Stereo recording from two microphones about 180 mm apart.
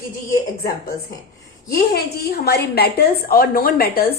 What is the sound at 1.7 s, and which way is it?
A woman's voice, 60° left (ahead or behind).